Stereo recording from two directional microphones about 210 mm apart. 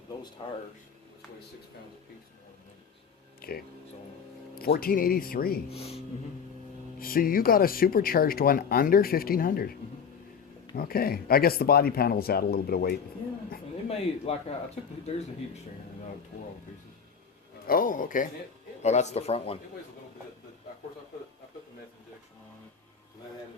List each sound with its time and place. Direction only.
0.4 s speech: 25° left (ahead or behind)
3.4 s speech: 45° left (ahead or behind)
5.7 s speech: 30° left (ahead or behind)
7.0 s speech: 45° left (ahead or behind)
10.8 s speech: 45° left (ahead or behind)
13.8 s speech: 30° left (ahead or behind)
17.7 s speech: 40° left (ahead or behind)